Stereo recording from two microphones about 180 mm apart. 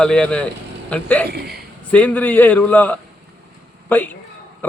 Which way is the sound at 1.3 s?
65° right (ahead or behind).